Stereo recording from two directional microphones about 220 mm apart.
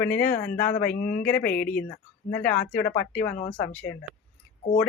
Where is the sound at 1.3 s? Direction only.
5° left (ahead or behind).